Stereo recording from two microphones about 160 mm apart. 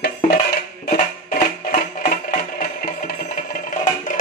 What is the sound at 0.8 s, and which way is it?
Music, 60° left (ahead or behind).